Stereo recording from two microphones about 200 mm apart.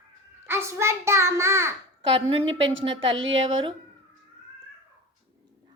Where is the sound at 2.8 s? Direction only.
25° right (ahead or behind).